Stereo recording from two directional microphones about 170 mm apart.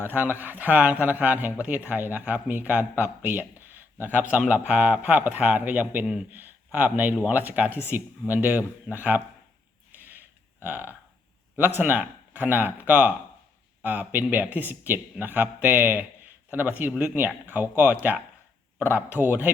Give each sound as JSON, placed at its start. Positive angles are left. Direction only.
{"t": 0.0, "sound": "speech", "side_deg": -10}
{"t": 9.9, "sound": "a sound", "side_deg": -10}
{"t": 11.5, "sound": "speech", "side_deg": -10}